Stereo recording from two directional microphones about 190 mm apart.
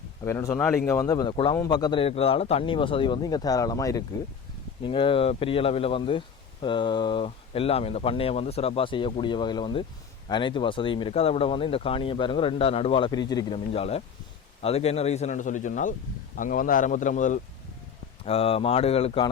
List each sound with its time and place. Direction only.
0.3 s speech: 15° left (ahead or behind); by 19.3 s 30° left (ahead or behind)